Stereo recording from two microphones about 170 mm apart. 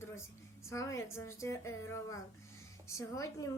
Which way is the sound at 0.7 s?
15° left (ahead or behind).